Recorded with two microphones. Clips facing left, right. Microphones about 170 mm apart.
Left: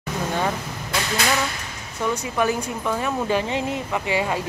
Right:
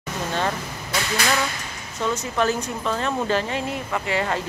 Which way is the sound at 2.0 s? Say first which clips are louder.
Even; 10° left (ahead or behind).